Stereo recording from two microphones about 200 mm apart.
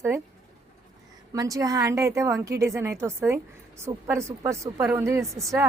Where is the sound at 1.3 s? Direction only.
15° right (ahead or behind).